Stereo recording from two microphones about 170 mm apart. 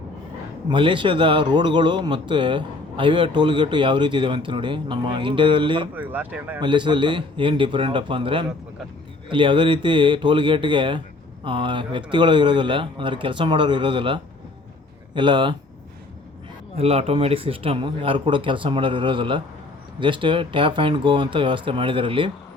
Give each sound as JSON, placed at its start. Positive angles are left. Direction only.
{"t": 0.7, "sound": "speech", "side_deg": -30}
{"t": 5.9, "sound": "speech", "side_deg": -10}
{"t": 6.6, "sound": "speech", "side_deg": -30}
{"t": 16.7, "sound": "speech", "side_deg": -35}